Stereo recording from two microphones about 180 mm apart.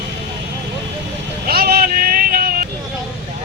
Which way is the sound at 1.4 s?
55° right (ahead or behind).